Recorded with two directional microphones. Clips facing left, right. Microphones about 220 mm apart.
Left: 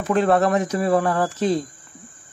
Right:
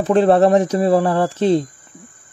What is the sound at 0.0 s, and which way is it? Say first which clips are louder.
Speech: right 5 dB; 30° right (ahead or behind).